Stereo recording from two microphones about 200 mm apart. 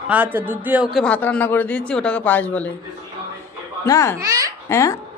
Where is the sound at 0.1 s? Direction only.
10° right (ahead or behind).